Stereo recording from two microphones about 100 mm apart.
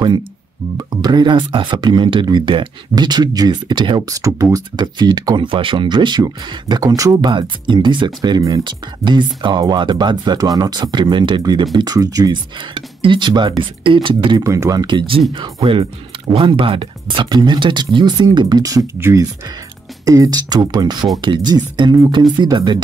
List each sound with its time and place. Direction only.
0.7 s speech: 45° right (ahead or behind)
4.0 s speech: 35° right (ahead or behind)
7.2 s speech: 50° right (ahead or behind)
8.4 s speech: 35° right (ahead or behind)
8.6 s speech: 50° right (ahead or behind)
12.5 s speech: 55° right (ahead or behind)
14.4 s speech: 30° right (ahead or behind); by 18.6 s 50° right (ahead or behind)
18.9 s speech: 25° right (ahead or behind)
20.1 s speech: 40° right (ahead or behind)